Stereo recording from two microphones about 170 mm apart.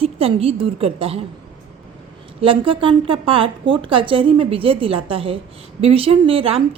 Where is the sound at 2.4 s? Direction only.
30° right (ahead or behind).